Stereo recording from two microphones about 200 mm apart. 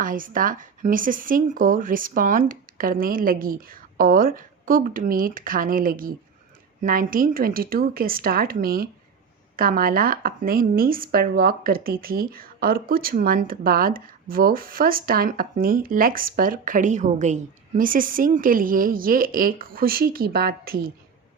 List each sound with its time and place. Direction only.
0.0 s speech: 45° right (ahead or behind)